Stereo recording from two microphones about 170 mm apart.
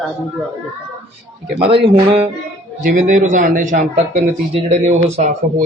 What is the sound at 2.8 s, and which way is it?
A man's voice, 50° right (ahead or behind).